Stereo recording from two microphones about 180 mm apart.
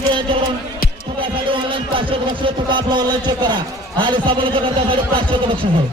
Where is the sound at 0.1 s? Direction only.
25° right (ahead or behind).